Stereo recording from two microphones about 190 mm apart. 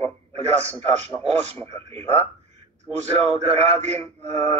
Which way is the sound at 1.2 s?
30° right (ahead or behind).